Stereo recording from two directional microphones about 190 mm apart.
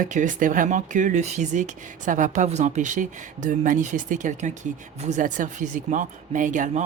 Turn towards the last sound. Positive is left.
turn(degrees=-40)  # may be behind; listen again after turning